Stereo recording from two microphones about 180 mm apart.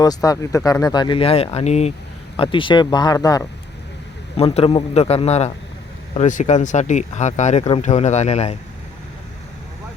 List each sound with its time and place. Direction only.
0.0 s speech: 20° left (ahead or behind)
4.4 s speech: 30° left (ahead or behind)